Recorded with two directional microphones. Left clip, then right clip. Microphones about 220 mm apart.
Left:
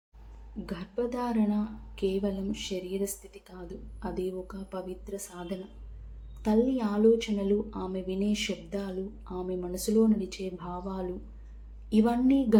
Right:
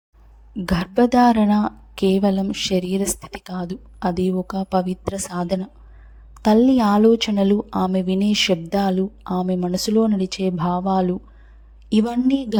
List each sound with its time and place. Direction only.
0.6 s speech: 50° right (ahead or behind)